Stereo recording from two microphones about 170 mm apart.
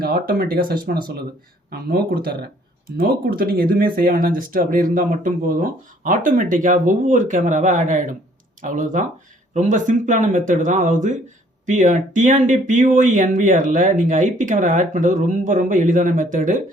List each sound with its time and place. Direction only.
0.0 s speech: 60° right (ahead or behind)